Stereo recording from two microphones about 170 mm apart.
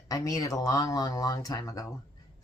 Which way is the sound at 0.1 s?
20° left (ahead or behind).